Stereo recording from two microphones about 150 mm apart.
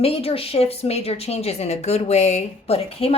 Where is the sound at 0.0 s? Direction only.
40° left (ahead or behind).